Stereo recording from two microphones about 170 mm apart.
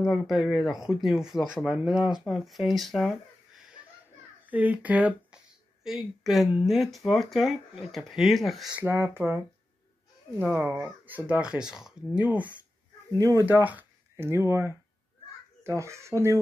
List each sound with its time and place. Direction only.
0.0 s speech: centre (ahead or behind)
10.4 s speech: 15° right (ahead or behind)
15.8 s speech: 15° right (ahead or behind)